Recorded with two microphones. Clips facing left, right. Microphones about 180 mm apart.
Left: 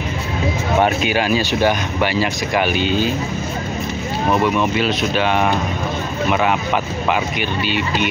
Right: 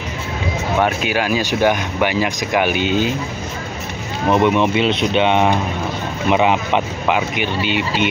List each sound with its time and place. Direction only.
0.8 s speech: 5° right (ahead or behind)
4.3 s speech: 25° right (ahead or behind)